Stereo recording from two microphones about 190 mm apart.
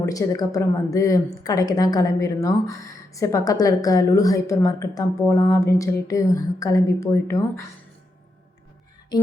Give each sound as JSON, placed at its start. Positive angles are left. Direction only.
{"t": 0.0, "sound": "a woman's voice", "side_deg": 20}